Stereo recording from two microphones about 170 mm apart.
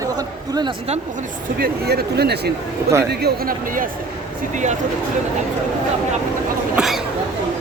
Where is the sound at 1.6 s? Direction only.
70° right (ahead or behind).